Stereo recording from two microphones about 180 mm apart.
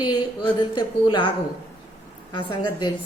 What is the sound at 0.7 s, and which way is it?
Speech, 25° left (ahead or behind).